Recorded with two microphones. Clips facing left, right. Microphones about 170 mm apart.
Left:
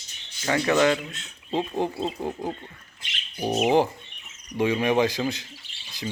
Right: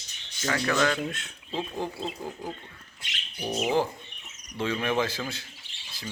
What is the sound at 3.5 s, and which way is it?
Speech, 20° left (ahead or behind).